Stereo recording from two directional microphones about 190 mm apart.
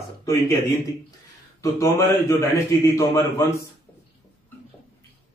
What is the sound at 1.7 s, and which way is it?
Speech, 15° left (ahead or behind).